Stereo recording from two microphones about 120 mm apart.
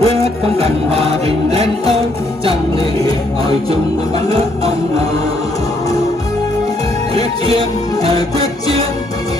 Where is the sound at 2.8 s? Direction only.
30° left (ahead or behind).